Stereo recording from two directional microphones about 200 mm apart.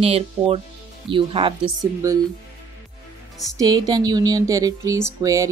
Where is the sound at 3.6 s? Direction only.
20° right (ahead or behind).